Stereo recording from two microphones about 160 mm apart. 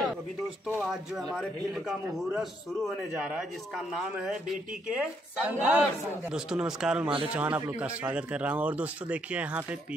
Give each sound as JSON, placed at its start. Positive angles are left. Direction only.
{"t": 0.7, "sound": "speech", "side_deg": 0}